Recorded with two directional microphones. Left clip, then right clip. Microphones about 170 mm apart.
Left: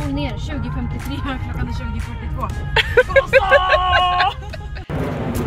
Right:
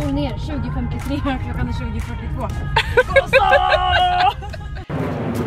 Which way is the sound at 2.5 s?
5° right (ahead or behind).